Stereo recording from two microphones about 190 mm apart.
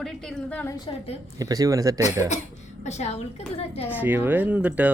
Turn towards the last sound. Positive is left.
turn(degrees=-10)  # may be behind; listen again after turning